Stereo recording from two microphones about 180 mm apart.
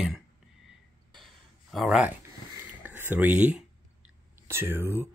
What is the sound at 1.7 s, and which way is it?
Speech, centre (ahead or behind).